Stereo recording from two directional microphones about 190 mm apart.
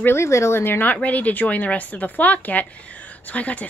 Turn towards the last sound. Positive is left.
turn(degrees=5)  # may be behind; listen again after turning